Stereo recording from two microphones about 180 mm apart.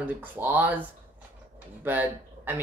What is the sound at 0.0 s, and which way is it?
Speech, 10° right (ahead or behind).